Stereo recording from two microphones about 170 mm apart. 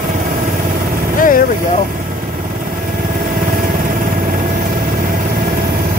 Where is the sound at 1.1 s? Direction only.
55° left (ahead or behind).